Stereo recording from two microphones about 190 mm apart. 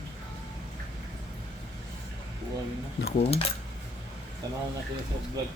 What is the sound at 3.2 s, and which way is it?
Speech, 30° left (ahead or behind).